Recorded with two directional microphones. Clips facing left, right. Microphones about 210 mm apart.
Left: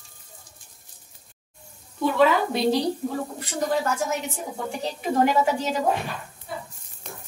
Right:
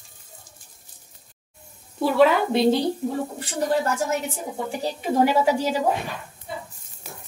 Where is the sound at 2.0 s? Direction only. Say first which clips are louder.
Right 2 dB; 30° right (ahead or behind).